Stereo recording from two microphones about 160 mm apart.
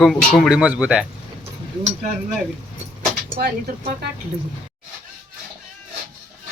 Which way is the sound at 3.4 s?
85° right.